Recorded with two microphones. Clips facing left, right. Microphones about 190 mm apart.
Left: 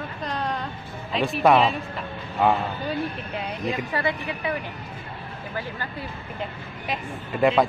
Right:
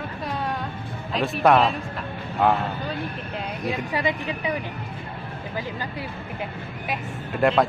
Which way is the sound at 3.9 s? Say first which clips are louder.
Right 1 dB; 15° right (ahead or behind).